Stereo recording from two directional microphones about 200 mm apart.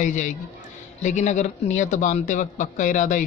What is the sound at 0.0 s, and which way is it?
Speech, 40° left (ahead or behind).